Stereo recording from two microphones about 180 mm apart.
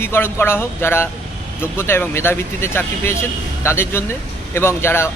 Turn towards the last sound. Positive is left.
turn(degrees=15)  # may be behind; listen again after turning